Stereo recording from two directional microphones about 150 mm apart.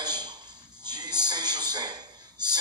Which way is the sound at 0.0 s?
30° right (ahead or behind).